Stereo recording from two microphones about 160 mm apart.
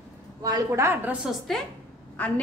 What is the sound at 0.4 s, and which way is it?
Speech, 20° right (ahead or behind).